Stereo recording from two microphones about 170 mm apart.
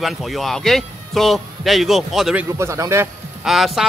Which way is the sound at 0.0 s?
Centre (ahead or behind).